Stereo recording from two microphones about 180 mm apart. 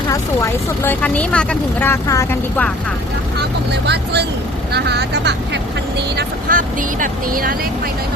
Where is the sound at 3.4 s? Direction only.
65° right (ahead or behind).